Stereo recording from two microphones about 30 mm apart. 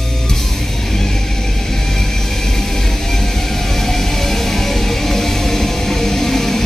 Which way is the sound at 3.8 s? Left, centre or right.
Centre.